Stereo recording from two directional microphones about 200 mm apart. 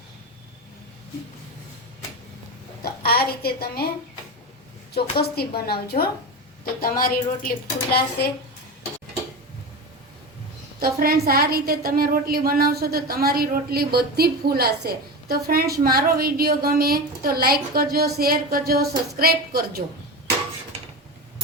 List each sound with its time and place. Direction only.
2.8 s a woman's voice: 50° left (ahead or behind)
4.9 s a woman's voice: 55° left (ahead or behind)
10.8 s a woman's voice: 50° right (ahead or behind)